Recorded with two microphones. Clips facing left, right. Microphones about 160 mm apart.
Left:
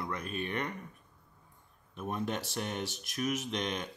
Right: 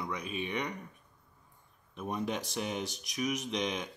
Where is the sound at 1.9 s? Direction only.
Centre (ahead or behind).